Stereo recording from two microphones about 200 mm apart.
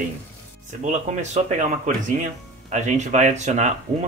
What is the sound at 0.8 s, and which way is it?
Speech, 35° right (ahead or behind).